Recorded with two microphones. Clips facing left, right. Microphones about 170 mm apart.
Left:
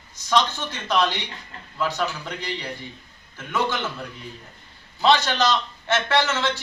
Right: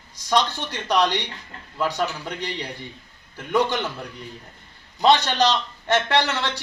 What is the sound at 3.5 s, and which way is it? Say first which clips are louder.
Speech: right 3 dB; 15° right (ahead or behind).